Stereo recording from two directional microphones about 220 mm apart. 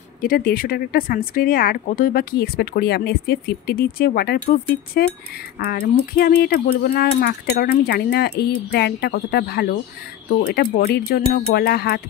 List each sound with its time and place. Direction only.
0.2 s speech: 40° left (ahead or behind)